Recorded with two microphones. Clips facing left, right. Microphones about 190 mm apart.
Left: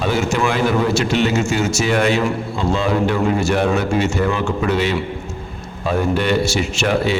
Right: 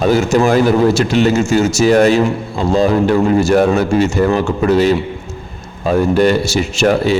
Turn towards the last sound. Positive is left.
turn(degrees=-40)  # may be behind; listen again after turning